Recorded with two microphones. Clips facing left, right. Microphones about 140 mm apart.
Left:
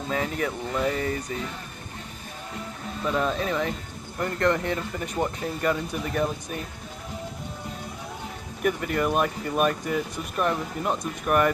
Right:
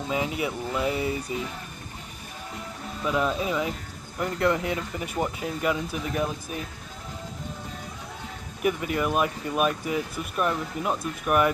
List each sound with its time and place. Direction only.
0.1 s speech: 10° right (ahead or behind)
3.0 s speech: 5° right (ahead or behind)
8.6 s speech: 5° right (ahead or behind)